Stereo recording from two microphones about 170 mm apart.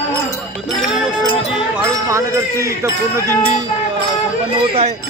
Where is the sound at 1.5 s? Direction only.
15° right (ahead or behind).